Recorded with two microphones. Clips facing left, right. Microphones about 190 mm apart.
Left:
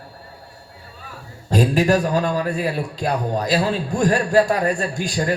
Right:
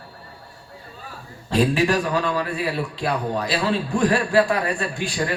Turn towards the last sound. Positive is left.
turn(degrees=40)  # may be behind; listen again after turning